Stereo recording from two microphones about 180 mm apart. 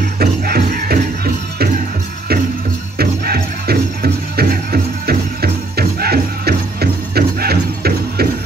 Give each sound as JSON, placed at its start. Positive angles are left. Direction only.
{"t": 0.2, "sound": "music", "side_deg": -55}
{"t": 3.0, "sound": "music", "side_deg": -60}